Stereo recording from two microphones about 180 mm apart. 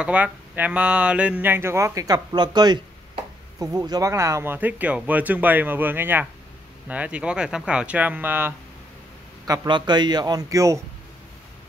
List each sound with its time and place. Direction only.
0.0 s speech: 10° right (ahead or behind)
9.5 s a man's voice: 25° right (ahead or behind)